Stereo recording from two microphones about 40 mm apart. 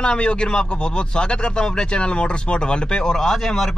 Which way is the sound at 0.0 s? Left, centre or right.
Left.